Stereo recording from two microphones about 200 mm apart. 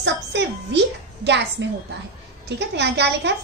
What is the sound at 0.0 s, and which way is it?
A woman's voice, 60° right (ahead or behind).